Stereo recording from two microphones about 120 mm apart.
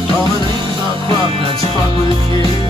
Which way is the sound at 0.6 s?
45° right (ahead or behind).